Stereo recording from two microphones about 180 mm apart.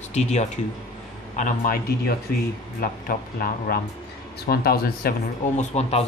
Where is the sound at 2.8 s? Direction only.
55° left (ahead or behind).